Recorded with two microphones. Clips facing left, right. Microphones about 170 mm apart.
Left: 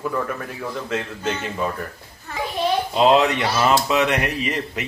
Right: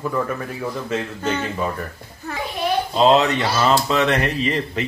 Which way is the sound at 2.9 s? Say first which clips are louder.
Right 1 dB; 10° left (ahead or behind).